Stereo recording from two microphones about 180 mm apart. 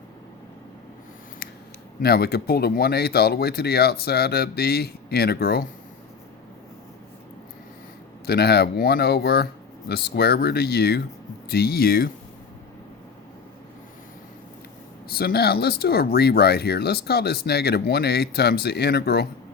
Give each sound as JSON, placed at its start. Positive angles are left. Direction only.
{"t": 2.0, "sound": "speech", "side_deg": 60}
{"t": 8.3, "sound": "speech", "side_deg": 65}
{"t": 15.1, "sound": "speech", "side_deg": 60}